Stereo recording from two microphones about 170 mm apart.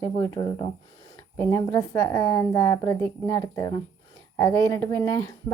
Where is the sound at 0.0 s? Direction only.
20° left (ahead or behind).